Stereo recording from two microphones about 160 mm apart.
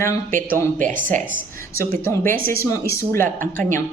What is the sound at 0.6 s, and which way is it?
Speech, 10° left (ahead or behind).